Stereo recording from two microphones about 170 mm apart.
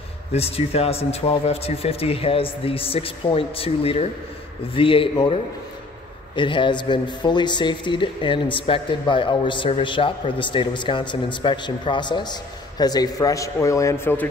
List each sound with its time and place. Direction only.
0.3 s speech: 35° left (ahead or behind); by 14.3 s 10° left (ahead or behind)